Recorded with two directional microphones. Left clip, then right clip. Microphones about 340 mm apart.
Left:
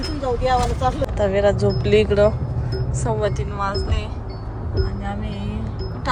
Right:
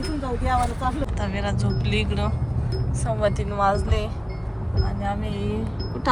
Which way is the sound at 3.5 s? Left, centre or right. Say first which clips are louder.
Right 3 dB; centre.